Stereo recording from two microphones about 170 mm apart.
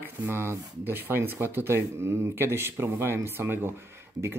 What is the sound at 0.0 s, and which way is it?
Speech, 15° right (ahead or behind).